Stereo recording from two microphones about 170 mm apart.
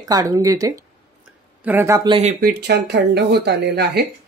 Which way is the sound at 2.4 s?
75° right (ahead or behind).